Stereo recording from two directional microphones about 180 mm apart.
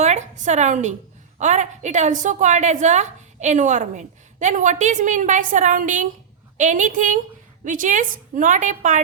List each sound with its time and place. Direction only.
0.0 s a woman's voice: 40° right (ahead or behind)